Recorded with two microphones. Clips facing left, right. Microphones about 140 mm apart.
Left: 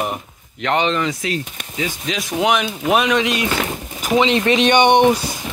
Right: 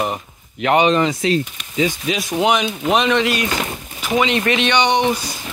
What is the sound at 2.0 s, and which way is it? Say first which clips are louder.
Speech: right 1 dB; 5° right (ahead or behind).